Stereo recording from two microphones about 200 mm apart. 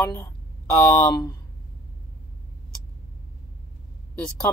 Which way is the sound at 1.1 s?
20° left (ahead or behind).